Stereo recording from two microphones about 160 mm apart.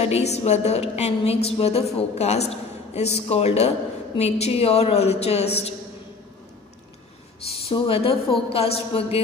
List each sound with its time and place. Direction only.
0.0 s a woman's voice: 40° left (ahead or behind)
7.6 s a woman's voice: 35° left (ahead or behind)